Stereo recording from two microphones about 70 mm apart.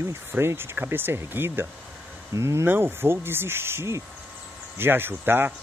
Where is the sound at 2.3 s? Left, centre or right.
Right.